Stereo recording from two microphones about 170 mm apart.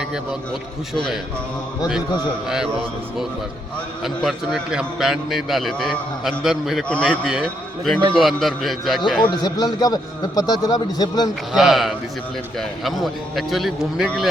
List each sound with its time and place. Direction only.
4.0 s a man's voice: centre (ahead or behind)
9.3 s a man's voice: 25° left (ahead or behind)
11.5 s a man's voice: centre (ahead or behind)